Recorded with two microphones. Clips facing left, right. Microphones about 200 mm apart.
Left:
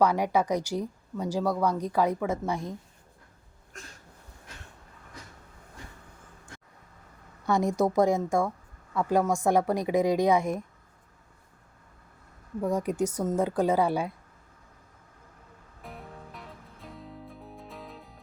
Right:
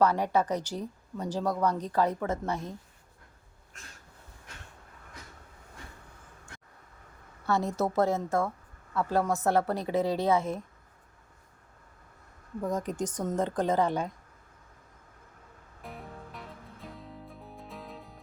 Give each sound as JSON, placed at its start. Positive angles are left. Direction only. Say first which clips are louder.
{"t": 0.0, "sound": "speech", "louder": "left 1 dB", "side_deg": 10}
{"t": 7.4, "sound": "speech", "louder": "left 4 dB", "side_deg": 15}
{"t": 12.6, "sound": "speech", "louder": "left 4 dB", "side_deg": 10}
{"t": 15.8, "sound": "music", "louder": "even", "side_deg": 0}